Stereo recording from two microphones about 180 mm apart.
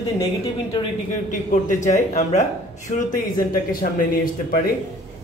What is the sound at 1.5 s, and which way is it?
Speech, 45° left (ahead or behind).